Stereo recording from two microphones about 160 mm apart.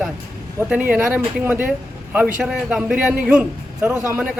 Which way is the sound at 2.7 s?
10° right (ahead or behind).